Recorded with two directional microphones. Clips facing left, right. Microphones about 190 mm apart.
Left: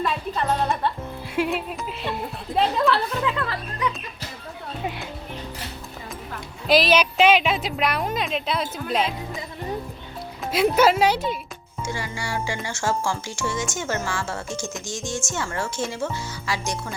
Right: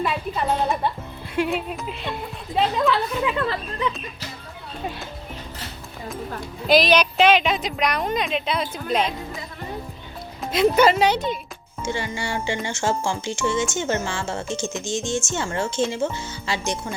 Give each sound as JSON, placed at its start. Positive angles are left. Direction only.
{"t": 0.0, "sound": "music", "side_deg": -10}
{"t": 1.4, "sound": "a woman's voice", "side_deg": 0}
{"t": 3.2, "sound": "speech", "side_deg": -20}
{"t": 6.7, "sound": "a woman's voice", "side_deg": 5}
{"t": 10.4, "sound": "a woman's voice", "side_deg": 5}
{"t": 11.8, "sound": "speech", "side_deg": -25}